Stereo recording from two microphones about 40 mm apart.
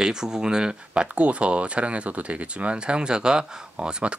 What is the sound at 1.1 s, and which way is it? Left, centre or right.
Speech, right.